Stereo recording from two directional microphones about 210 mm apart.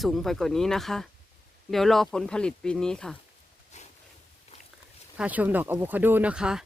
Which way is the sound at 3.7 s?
35° left (ahead or behind).